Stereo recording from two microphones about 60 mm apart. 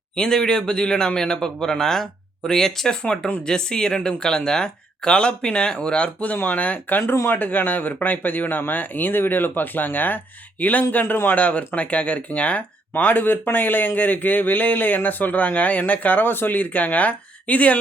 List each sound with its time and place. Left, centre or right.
0.2 s speech: centre